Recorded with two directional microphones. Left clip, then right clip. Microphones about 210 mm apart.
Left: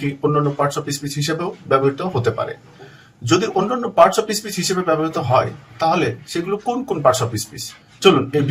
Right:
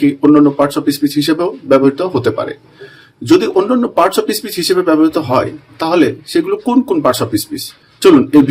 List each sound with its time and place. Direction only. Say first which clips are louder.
0.0 s speech: right 10 dB; 45° right (ahead or behind)